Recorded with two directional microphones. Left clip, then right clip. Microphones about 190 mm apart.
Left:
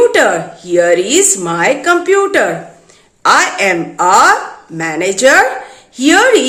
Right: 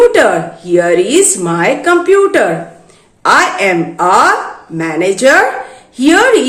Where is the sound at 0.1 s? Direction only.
15° left (ahead or behind).